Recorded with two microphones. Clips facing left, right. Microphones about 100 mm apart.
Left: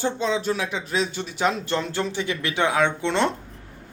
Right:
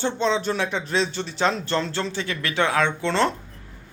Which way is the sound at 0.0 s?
5° left (ahead or behind).